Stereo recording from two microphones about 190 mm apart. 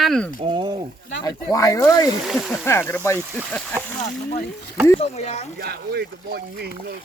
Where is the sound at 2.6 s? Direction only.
15° left (ahead or behind).